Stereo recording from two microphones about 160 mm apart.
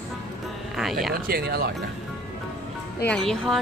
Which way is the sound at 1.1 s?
75° right (ahead or behind).